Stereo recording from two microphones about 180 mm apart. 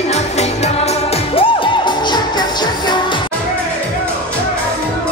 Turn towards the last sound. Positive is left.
turn(degrees=25)  # may be behind; listen again after turning